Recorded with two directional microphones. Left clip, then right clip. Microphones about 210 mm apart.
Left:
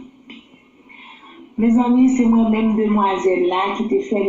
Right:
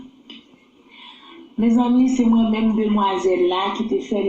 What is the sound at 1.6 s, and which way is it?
A man's voice, 40° right (ahead or behind).